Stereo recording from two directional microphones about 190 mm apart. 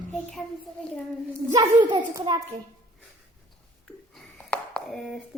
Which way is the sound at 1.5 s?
25° right (ahead or behind).